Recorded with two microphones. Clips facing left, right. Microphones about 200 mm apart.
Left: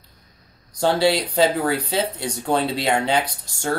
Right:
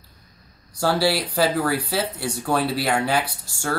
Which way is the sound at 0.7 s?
20° left (ahead or behind).